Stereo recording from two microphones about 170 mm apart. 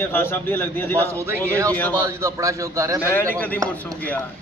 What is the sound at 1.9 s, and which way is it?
A man's voice, 20° right (ahead or behind).